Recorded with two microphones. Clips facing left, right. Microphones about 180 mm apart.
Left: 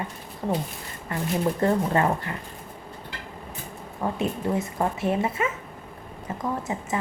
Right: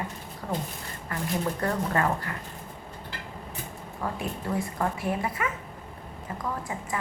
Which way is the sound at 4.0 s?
20° left (ahead or behind).